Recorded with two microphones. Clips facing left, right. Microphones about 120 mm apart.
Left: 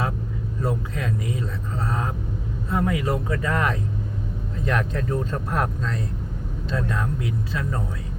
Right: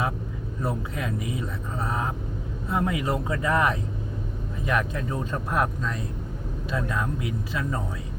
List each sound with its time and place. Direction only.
0.6 s speech: 15° right (ahead or behind)